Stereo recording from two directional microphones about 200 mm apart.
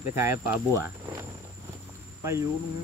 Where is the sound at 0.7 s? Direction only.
15° right (ahead or behind).